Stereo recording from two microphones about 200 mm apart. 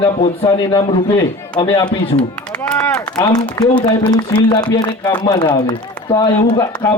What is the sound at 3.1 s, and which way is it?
A man's voice, 20° left (ahead or behind).